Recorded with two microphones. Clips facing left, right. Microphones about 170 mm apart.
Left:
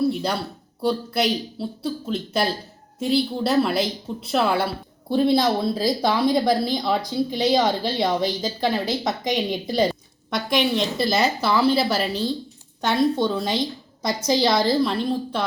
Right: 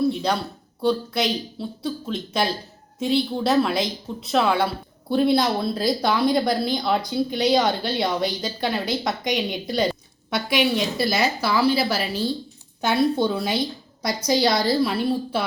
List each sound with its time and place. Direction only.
0.0 s speech: 5° left (ahead or behind)
14.1 s a woman's voice: 25° left (ahead or behind)
14.8 s a woman's voice: 5° right (ahead or behind)